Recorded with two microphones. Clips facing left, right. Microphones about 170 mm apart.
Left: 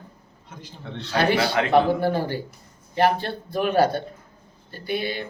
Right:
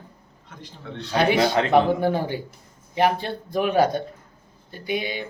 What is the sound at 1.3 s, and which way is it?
A man's voice, 20° right (ahead or behind).